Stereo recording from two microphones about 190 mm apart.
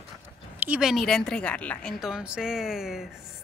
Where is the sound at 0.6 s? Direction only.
5° right (ahead or behind).